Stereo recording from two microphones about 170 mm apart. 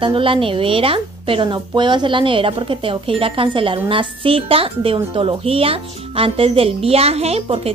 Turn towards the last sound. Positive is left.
turn(degrees=-35)  # may be behind; listen again after turning